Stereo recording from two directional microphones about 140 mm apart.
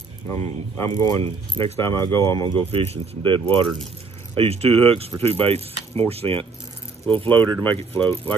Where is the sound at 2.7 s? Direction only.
45° right (ahead or behind).